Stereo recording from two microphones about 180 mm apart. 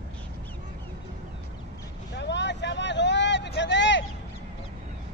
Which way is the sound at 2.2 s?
75° left (ahead or behind).